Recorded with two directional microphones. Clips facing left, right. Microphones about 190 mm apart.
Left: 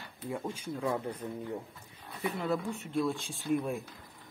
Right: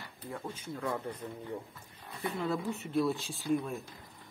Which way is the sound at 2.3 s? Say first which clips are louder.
Even; centre (ahead or behind).